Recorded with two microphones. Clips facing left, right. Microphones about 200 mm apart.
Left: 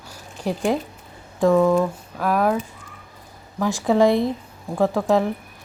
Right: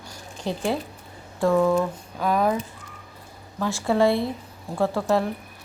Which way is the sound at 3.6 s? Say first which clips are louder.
Left 3 dB; 15° left (ahead or behind).